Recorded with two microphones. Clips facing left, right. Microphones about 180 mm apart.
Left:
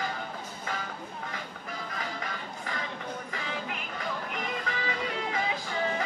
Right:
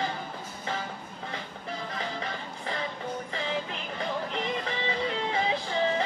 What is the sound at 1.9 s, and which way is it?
Music, 30° right (ahead or behind).